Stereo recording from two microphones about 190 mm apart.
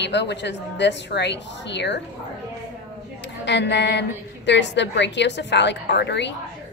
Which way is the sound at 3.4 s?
65° left (ahead or behind).